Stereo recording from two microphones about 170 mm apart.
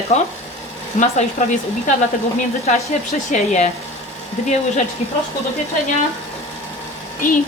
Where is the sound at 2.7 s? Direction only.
40° left (ahead or behind).